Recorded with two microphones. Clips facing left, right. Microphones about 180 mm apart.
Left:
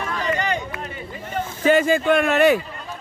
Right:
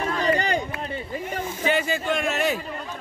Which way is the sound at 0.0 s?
35° right (ahead or behind).